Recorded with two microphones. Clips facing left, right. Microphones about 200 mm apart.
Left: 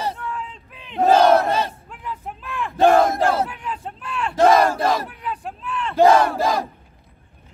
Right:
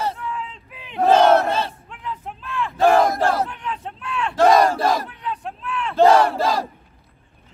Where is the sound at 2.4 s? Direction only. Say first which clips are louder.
Left 1 dB; 15° left (ahead or behind).